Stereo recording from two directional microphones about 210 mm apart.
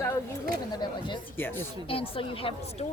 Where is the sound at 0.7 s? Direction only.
20° left (ahead or behind).